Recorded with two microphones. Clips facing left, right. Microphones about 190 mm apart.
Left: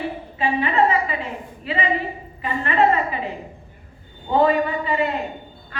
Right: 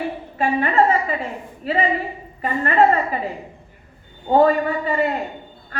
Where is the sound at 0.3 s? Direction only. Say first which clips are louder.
Right 2 dB; 45° right (ahead or behind).